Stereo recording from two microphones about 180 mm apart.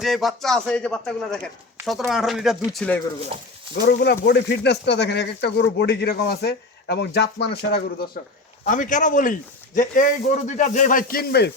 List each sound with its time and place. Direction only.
0.0 s speech: centre (ahead or behind)
3.3 s speech: 30° right (ahead or behind)
3.8 s speech: 60° left (ahead or behind)
8.6 s speech: 45° left (ahead or behind); by 11.5 s 65° left (ahead or behind)